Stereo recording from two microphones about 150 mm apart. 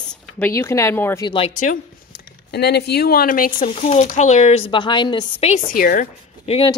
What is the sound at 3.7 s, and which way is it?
A woman's voice, 45° left (ahead or behind).